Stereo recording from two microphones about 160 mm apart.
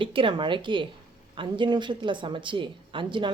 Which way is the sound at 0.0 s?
30° right (ahead or behind).